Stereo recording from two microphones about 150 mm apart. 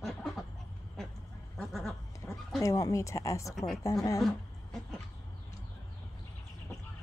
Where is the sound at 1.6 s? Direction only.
Centre (ahead or behind).